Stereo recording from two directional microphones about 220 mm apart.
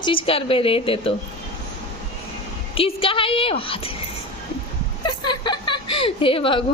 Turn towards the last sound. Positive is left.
turn(degrees=25)  # may be behind; listen again after turning